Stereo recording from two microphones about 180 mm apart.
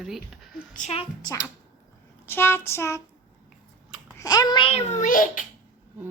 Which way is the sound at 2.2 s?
10° left (ahead or behind).